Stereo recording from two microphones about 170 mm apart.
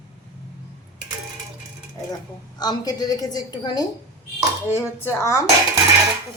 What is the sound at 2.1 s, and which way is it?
A woman's voice, 25° left (ahead or behind).